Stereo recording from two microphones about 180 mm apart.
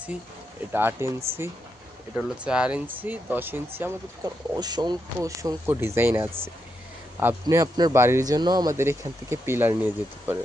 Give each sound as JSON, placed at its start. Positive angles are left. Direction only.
{"t": 0.7, "sound": "speech", "side_deg": -10}
{"t": 2.1, "sound": "speech", "side_deg": -5}